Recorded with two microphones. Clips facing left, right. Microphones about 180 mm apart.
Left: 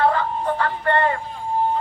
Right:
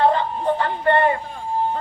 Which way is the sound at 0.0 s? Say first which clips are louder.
Right 1 dB; 20° right (ahead or behind).